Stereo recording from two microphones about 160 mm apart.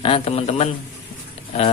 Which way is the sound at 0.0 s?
35° left (ahead or behind).